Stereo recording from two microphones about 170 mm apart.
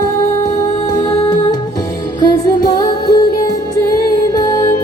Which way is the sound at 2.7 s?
20° left (ahead or behind).